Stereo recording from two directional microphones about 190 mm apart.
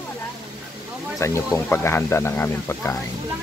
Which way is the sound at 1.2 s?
15° left (ahead or behind).